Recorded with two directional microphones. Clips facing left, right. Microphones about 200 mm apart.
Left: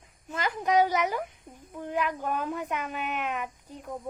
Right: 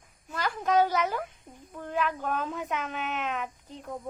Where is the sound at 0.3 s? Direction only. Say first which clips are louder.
Left 1 dB; 20° left (ahead or behind).